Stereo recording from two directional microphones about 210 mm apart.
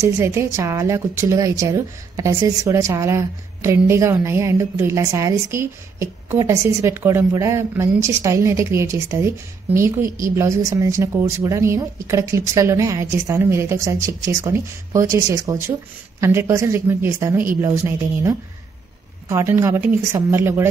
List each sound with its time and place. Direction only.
0.0 s a woman's voice: 10° right (ahead or behind)